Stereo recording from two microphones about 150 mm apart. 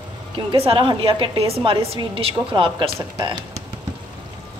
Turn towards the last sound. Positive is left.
turn(degrees=-25)  # may be behind; listen again after turning